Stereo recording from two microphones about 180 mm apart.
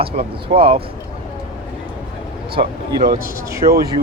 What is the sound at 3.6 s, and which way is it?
Speech, 35° right (ahead or behind).